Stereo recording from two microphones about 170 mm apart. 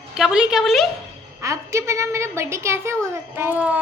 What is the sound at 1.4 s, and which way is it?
A woman's voice, 15° right (ahead or behind).